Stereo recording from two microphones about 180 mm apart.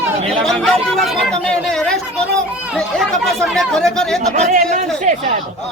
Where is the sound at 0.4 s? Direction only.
5° left (ahead or behind).